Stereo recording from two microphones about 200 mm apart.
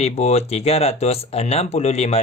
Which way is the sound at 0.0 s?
30° left (ahead or behind).